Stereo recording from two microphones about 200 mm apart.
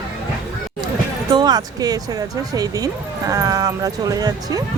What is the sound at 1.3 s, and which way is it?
Speech, 20° right (ahead or behind).